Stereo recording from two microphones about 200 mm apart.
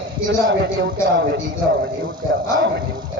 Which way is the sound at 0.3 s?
60° right (ahead or behind).